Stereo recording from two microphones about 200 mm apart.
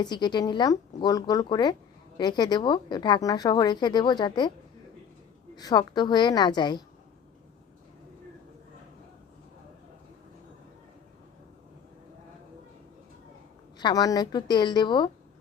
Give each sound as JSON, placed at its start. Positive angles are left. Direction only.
{"t": 0.0, "sound": "a woman's voice", "side_deg": 20}
{"t": 5.5, "sound": "a woman's voice", "side_deg": 20}
{"t": 13.7, "sound": "a woman's voice", "side_deg": 20}